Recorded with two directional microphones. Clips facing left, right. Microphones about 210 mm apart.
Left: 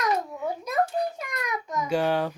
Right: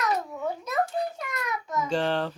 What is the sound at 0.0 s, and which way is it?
Babbling, 10° left (ahead or behind).